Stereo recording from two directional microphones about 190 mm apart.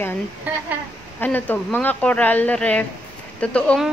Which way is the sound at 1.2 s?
10° left (ahead or behind).